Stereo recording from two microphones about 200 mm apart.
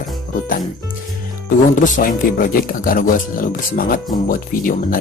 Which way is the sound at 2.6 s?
45° left (ahead or behind).